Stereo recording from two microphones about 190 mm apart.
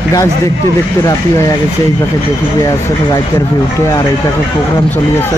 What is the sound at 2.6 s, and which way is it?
Speech, 20° left (ahead or behind).